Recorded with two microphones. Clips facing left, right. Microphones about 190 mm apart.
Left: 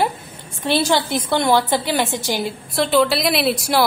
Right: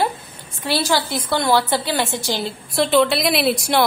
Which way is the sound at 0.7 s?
20° left (ahead or behind).